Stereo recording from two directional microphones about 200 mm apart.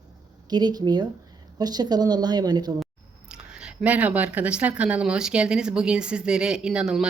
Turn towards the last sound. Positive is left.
turn(degrees=-5)  # may be behind; listen again after turning